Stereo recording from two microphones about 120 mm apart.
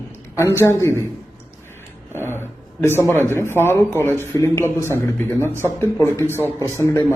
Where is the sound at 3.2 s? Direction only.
20° left (ahead or behind).